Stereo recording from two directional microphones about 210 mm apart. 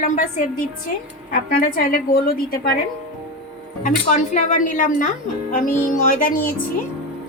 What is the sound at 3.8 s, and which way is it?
Speech, 35° left (ahead or behind).